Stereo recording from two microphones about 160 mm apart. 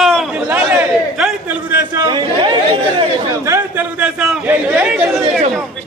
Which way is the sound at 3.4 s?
15° right (ahead or behind).